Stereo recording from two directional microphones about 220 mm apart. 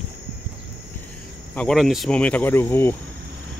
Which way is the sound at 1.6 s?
Centre (ahead or behind).